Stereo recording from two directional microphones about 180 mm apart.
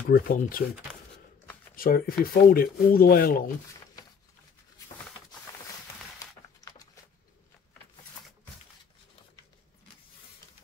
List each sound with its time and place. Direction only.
0.3 s speech: 50° left (ahead or behind)
1.8 s speech: 55° left (ahead or behind)
6.1 s a sound: 20° left (ahead or behind)